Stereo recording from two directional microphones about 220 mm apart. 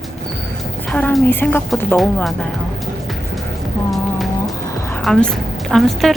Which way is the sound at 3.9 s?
Centre (ahead or behind).